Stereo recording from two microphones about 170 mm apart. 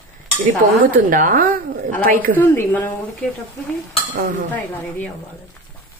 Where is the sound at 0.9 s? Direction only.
55° right (ahead or behind).